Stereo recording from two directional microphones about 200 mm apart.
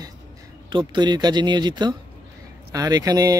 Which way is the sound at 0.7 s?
25° right (ahead or behind).